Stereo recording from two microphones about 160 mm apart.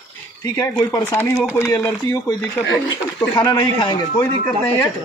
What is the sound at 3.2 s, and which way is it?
Speech, 20° left (ahead or behind).